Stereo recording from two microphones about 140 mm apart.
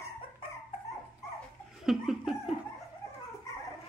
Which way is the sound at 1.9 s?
Centre (ahead or behind).